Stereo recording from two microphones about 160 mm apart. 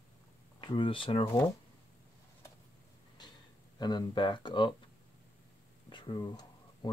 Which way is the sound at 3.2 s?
25° left (ahead or behind).